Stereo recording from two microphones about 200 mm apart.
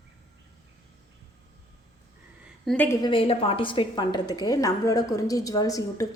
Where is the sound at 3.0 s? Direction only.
25° left (ahead or behind).